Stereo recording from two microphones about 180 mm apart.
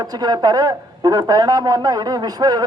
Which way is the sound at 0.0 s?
20° right (ahead or behind).